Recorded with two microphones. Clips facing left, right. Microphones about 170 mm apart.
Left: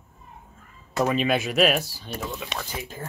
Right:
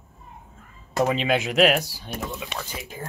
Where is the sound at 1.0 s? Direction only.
15° right (ahead or behind).